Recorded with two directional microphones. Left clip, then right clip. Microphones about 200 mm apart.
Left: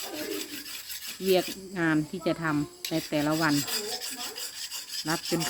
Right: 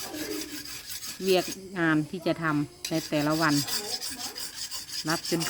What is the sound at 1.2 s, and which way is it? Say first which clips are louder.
Speech: even; 15° right (ahead or behind).